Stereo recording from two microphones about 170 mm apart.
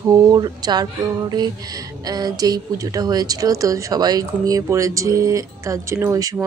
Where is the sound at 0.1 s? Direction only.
25° right (ahead or behind).